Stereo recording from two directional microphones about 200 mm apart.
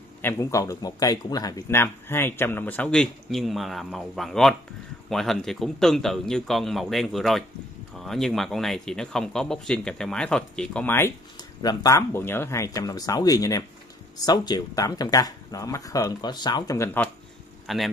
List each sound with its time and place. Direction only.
0.2 s speech: 15° left (ahead or behind)
17.6 s speech: centre (ahead or behind)